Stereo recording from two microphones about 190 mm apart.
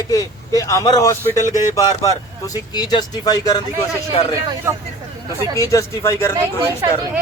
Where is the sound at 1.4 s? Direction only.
40° left (ahead or behind).